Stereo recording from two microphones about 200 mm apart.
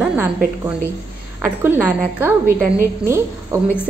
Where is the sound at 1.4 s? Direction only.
10° right (ahead or behind).